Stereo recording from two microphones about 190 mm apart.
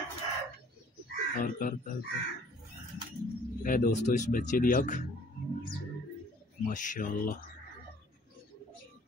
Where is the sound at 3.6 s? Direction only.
45° left (ahead or behind).